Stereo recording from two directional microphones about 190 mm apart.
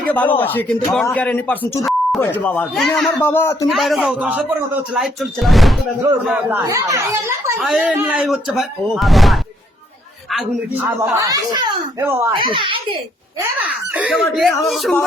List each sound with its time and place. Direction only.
0.0 s speech: 10° left (ahead or behind)
2.2 s speech: 10° left (ahead or behind)
3.7 s speech: centre (ahead or behind)
6.6 s speech: 15° right (ahead or behind)
7.6 s a child's voice: centre (ahead or behind); by 13.0 s 25° right (ahead or behind)
13.6 s speech: 5° right (ahead or behind)